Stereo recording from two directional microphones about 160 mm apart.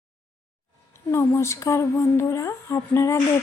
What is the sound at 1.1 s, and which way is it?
Speech, 15° left (ahead or behind).